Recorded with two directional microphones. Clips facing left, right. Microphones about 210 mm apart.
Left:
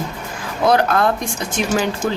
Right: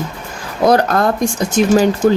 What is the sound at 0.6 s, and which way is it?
Speech, 40° right (ahead or behind).